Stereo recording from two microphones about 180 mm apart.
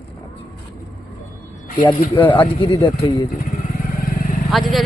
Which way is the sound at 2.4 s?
30° left (ahead or behind).